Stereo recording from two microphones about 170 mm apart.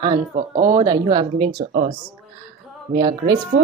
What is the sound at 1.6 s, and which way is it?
Speech, 55° right (ahead or behind).